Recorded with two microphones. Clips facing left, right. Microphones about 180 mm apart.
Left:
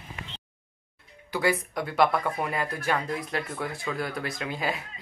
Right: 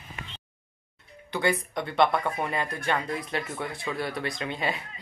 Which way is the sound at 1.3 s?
5° left (ahead or behind).